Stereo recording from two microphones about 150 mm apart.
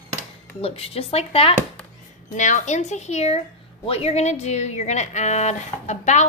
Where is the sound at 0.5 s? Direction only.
40° left (ahead or behind).